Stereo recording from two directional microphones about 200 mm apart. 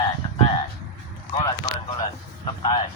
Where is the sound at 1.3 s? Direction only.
15° left (ahead or behind).